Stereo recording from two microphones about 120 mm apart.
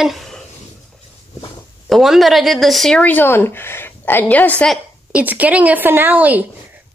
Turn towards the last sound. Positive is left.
turn(degrees=-15)  # may be behind; listen again after turning